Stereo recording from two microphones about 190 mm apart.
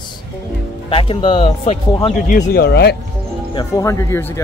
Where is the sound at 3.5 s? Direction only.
20° left (ahead or behind).